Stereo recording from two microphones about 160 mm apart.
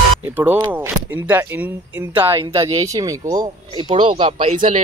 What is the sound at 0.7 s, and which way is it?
Speech, 10° right (ahead or behind).